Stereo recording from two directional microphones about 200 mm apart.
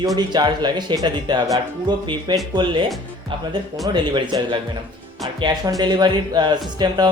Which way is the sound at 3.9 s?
25° right (ahead or behind).